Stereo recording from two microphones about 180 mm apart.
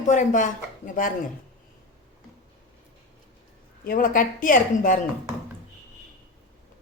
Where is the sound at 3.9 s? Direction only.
50° left (ahead or behind).